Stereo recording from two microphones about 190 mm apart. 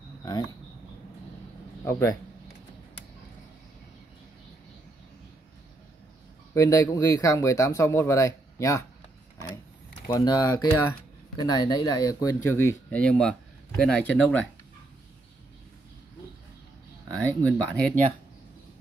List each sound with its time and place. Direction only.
1.9 s speech: 15° left (ahead or behind)
6.5 s speech: 15° left (ahead or behind)
10.0 s speech: 20° left (ahead or behind)
17.2 s speech: 10° left (ahead or behind)